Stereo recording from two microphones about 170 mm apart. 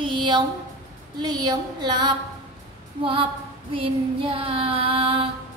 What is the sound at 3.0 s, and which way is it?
Female singing, 30° right (ahead or behind).